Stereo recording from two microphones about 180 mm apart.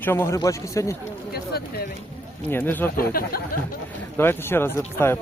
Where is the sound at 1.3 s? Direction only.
60° left (ahead or behind).